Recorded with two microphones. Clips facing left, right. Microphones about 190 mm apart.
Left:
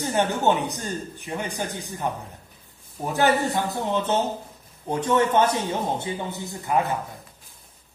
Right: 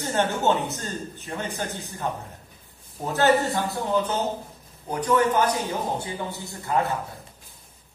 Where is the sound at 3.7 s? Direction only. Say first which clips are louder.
Left 1 dB; 25° left (ahead or behind).